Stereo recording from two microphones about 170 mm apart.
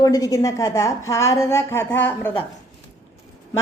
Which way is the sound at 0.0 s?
20° left (ahead or behind).